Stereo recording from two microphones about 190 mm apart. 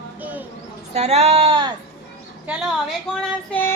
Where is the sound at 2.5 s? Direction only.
5° right (ahead or behind).